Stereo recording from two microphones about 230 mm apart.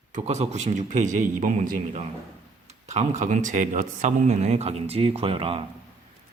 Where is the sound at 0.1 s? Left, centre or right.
Right.